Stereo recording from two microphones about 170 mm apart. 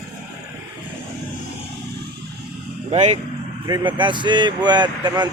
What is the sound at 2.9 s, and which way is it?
Speech, 40° right (ahead or behind).